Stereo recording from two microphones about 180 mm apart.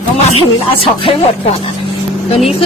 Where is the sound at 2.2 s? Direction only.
35° left (ahead or behind).